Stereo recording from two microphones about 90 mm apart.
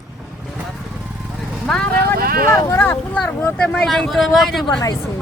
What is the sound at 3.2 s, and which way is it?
Speech, 15° left (ahead or behind).